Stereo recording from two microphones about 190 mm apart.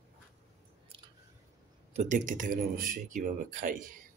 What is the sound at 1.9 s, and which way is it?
Speech, 40° right (ahead or behind).